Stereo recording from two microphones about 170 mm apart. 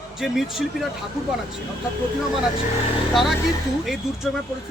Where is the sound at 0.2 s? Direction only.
Centre (ahead or behind).